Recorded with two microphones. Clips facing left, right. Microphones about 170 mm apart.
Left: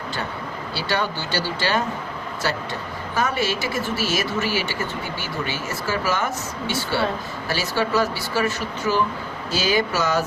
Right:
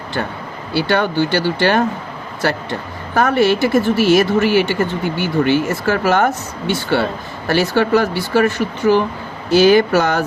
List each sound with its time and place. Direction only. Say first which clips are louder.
0.7 s speech: right 9 dB; 55° right (ahead or behind)